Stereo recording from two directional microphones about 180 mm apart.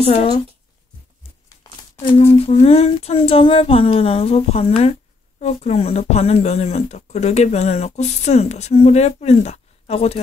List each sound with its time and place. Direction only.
0.0 s speech: 35° left (ahead or behind)
1.6 s a sound: 20° left (ahead or behind)
2.3 s speech: 35° left (ahead or behind)